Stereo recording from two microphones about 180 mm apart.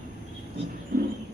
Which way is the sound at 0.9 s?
55° right (ahead or behind).